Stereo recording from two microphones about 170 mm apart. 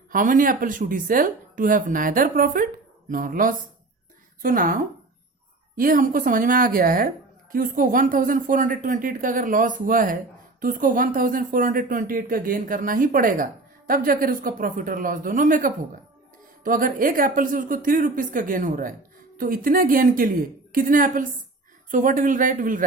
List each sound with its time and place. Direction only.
0.1 s a woman's voice: 50° right (ahead or behind)